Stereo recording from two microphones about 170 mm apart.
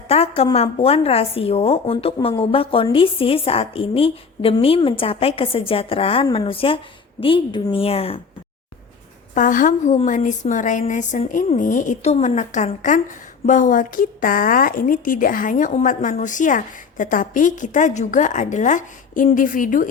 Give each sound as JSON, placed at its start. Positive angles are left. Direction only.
{"t": 0.1, "sound": "a woman's voice", "side_deg": 35}
{"t": 9.3, "sound": "a woman's voice", "side_deg": 50}